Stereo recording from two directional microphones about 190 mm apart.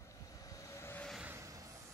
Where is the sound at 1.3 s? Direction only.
15° right (ahead or behind).